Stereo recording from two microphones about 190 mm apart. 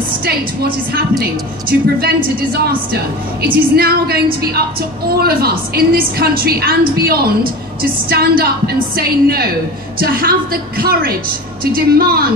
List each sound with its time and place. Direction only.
1.7 s a woman's voice: 55° right (ahead or behind)
3.7 s a woman's voice: 55° right (ahead or behind)